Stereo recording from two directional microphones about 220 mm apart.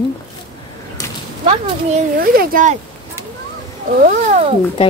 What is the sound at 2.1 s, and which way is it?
Speech, 40° right (ahead or behind).